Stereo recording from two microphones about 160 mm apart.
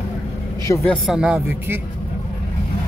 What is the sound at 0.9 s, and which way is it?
Speech, centre (ahead or behind).